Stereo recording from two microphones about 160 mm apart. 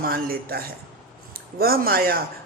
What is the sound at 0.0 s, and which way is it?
Speech, 65° right (ahead or behind).